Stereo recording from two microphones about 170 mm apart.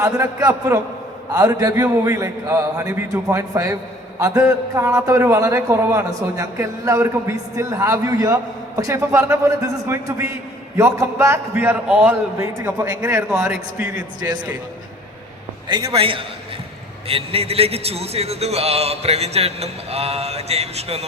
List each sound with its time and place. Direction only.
0.0 s a man's voice: 20° right (ahead or behind)
13.2 s a man's voice: 5° right (ahead or behind)
14.2 s a man's voice: 25° right (ahead or behind)
15.9 s a man's voice: 30° right (ahead or behind)